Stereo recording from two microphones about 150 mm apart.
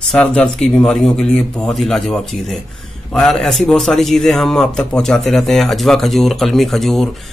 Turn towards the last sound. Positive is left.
turn(degrees=0)  # may be behind; listen again after turning